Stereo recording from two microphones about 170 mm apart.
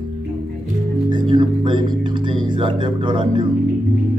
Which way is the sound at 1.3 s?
25° right (ahead or behind).